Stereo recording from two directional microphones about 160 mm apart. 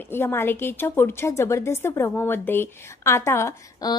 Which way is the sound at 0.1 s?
15° left (ahead or behind).